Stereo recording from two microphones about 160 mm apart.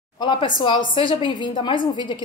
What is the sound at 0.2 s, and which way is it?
A woman's voice, 30° left (ahead or behind).